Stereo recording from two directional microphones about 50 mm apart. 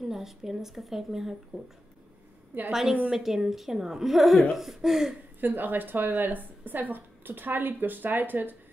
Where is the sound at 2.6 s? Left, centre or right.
Centre.